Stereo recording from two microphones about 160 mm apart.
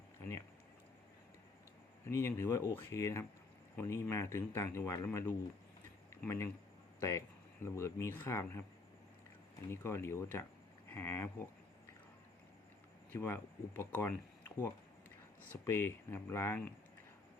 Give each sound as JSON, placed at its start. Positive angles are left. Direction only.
{"t": 2.0, "sound": "speech", "side_deg": 15}
{"t": 9.6, "sound": "speech", "side_deg": 15}
{"t": 13.1, "sound": "speech", "side_deg": 15}
{"t": 15.6, "sound": "speech", "side_deg": 15}